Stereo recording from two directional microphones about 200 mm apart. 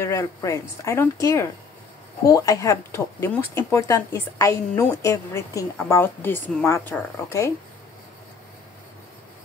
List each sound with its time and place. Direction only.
0.0 s speech: 15° left (ahead or behind)